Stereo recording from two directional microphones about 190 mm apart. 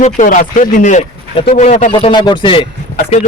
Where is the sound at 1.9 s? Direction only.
25° left (ahead or behind).